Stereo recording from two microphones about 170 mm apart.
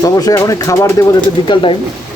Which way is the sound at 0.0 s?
20° left (ahead or behind).